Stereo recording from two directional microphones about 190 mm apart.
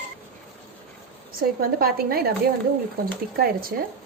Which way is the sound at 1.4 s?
50° right (ahead or behind).